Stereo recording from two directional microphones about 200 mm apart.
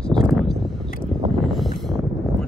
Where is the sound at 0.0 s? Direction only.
Centre (ahead or behind).